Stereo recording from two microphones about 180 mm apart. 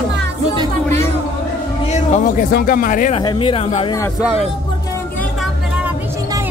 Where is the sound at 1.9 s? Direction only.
40° left (ahead or behind).